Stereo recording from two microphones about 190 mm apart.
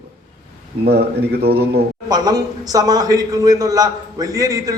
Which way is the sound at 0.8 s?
55° right (ahead or behind).